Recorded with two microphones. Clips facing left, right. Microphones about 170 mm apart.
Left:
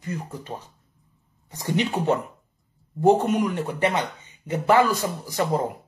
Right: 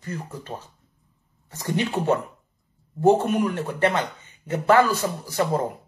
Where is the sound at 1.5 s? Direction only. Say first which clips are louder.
Left 1 dB; 15° left (ahead or behind).